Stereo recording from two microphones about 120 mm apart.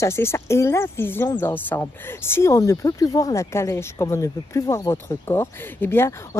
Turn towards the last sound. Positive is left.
turn(degrees=20)  # may be behind; listen again after turning